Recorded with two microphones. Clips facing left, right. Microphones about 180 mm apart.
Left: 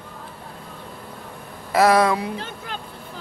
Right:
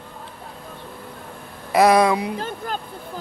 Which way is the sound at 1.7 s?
15° right (ahead or behind).